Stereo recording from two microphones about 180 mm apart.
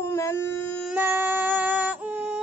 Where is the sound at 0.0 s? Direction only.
15° left (ahead or behind).